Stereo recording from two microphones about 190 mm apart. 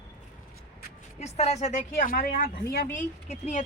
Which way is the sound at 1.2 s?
35° left (ahead or behind).